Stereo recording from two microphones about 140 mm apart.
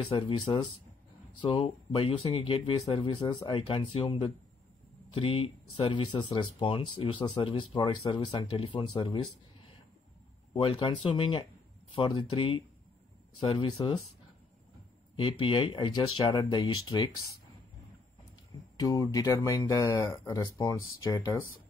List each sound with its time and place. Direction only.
0.0 s speech: 40° left (ahead or behind)
10.5 s speech: 40° left (ahead or behind)
15.1 s speech: 40° left (ahead or behind)
18.8 s speech: 25° left (ahead or behind)